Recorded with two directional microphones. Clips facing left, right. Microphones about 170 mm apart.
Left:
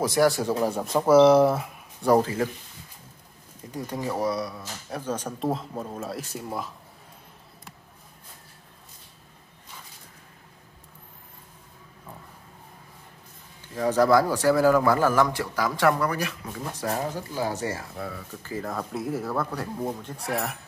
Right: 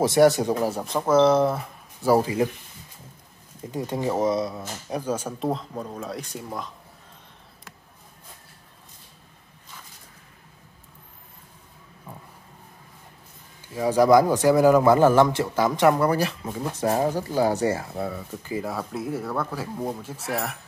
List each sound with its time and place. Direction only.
0.0 s speech: 25° right (ahead or behind)
0.6 s speech: centre (ahead or behind)
0.9 s speech: 10° left (ahead or behind)
3.7 s speech: 25° right (ahead or behind)
5.5 s speech: 5° left (ahead or behind)
13.7 s speech: 10° right (ahead or behind)
16.1 s speech: 30° right (ahead or behind); by 20.5 s centre (ahead or behind)